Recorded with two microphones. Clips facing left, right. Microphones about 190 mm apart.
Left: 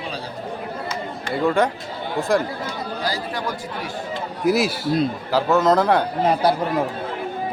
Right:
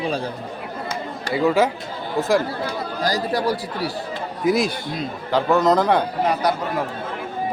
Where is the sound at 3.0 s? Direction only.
40° right (ahead or behind).